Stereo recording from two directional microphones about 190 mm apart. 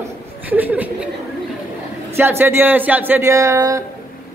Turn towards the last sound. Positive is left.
turn(degrees=-15)  # may be behind; listen again after turning